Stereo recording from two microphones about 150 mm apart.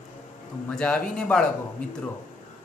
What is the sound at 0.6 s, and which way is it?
Speech, 5° left (ahead or behind).